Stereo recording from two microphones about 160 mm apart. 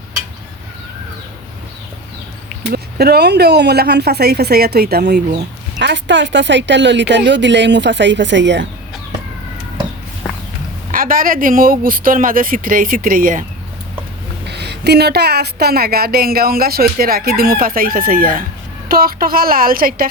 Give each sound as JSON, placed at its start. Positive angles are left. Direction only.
{"t": 2.7, "sound": "speech", "side_deg": -85}
{"t": 5.8, "sound": "speech", "side_deg": -90}
{"t": 10.9, "sound": "speech", "side_deg": -60}
{"t": 14.4, "sound": "a woman's voice", "side_deg": -90}